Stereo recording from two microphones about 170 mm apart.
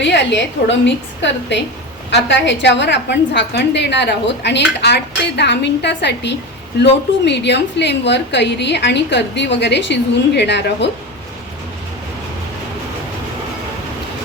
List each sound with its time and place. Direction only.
0.0 s a woman's voice: 90° left